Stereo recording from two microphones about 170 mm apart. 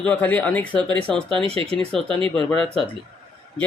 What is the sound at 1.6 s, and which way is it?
Speech, 5° left (ahead or behind).